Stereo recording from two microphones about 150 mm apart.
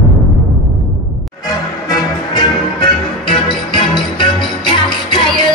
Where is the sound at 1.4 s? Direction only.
25° left (ahead or behind).